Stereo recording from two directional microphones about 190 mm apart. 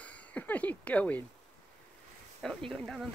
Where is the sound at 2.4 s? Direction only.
5° left (ahead or behind).